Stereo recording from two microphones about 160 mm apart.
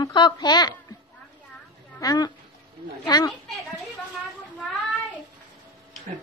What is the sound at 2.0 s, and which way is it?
A woman's voice, 25° left (ahead or behind).